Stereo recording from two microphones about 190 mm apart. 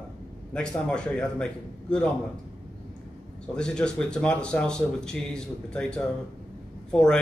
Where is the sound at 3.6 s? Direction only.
5° left (ahead or behind).